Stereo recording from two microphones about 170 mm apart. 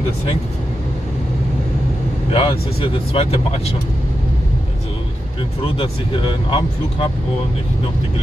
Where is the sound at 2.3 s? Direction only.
30° left (ahead or behind).